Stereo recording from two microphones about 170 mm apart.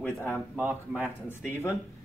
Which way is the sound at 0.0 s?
15° left (ahead or behind).